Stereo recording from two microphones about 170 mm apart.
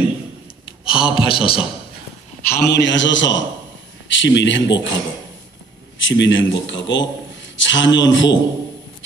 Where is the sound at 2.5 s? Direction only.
80° left.